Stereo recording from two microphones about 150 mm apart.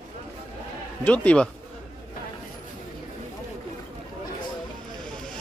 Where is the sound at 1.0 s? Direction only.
10° left (ahead or behind).